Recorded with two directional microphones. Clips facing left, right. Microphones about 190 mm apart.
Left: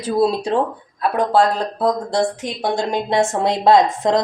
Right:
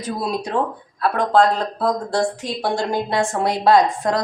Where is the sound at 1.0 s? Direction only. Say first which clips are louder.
Even; 15° left (ahead or behind).